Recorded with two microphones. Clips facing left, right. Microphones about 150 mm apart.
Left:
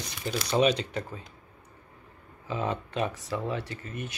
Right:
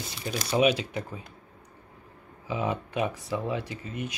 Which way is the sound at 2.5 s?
15° right (ahead or behind).